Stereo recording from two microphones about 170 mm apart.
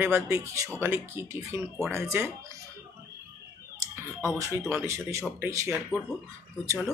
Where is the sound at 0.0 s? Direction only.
15° right (ahead or behind).